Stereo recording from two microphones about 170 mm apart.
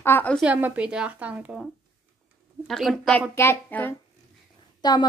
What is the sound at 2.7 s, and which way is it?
A child's voice, centre (ahead or behind).